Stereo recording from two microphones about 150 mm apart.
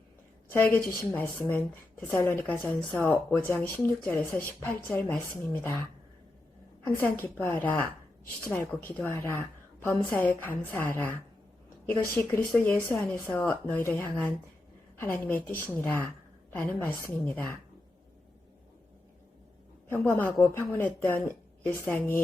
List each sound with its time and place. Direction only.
0.5 s a woman's voice: 15° left (ahead or behind)
6.8 s a woman's voice: 15° left (ahead or behind)
19.9 s a woman's voice: 15° left (ahead or behind)